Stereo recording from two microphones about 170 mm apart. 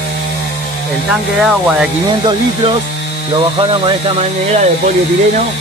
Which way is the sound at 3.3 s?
30° right (ahead or behind).